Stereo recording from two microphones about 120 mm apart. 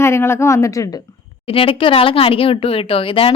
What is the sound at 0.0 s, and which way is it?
Speech, 20° left (ahead or behind).